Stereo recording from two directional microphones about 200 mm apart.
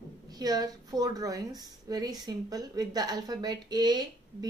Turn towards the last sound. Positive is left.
turn(degrees=-20)  # may be behind; listen again after turning